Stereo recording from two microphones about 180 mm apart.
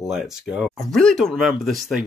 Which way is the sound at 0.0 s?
Centre (ahead or behind).